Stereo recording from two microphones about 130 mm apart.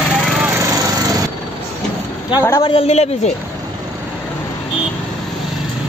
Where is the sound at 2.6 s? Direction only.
45° left (ahead or behind).